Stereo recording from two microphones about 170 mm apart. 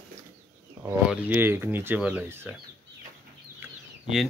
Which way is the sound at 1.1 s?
10° right (ahead or behind).